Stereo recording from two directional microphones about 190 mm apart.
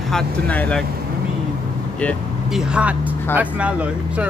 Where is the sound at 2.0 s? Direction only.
Centre (ahead or behind).